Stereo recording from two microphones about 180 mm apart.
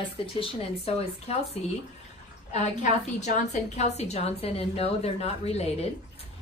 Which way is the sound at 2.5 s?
40° left (ahead or behind).